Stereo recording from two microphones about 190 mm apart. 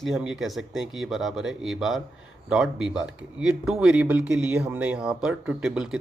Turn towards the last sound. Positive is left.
turn(degrees=-5)  # may be behind; listen again after turning